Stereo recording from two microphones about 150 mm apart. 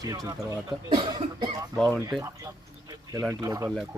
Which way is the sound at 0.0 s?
25° right (ahead or behind).